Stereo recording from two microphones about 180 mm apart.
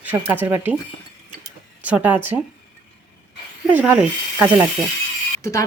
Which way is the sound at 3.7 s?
10° right (ahead or behind).